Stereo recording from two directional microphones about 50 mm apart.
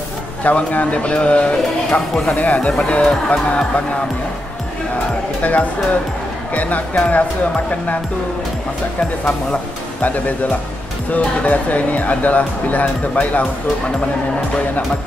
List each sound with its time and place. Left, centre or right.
0.4 s speech: left
5.4 s speech: left
10.0 s speech: left